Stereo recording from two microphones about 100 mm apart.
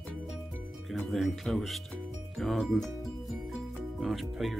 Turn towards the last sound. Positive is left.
turn(degrees=0)  # may be behind; listen again after turning